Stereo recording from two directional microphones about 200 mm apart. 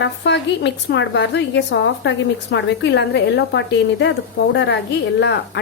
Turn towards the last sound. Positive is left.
turn(degrees=60)  # may be behind; listen again after turning